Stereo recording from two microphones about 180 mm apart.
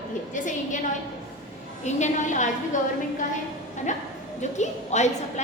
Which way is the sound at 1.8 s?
40° left (ahead or behind).